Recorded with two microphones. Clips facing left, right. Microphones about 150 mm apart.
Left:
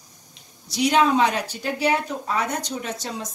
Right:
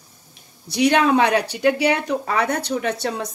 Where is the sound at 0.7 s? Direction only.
60° right (ahead or behind).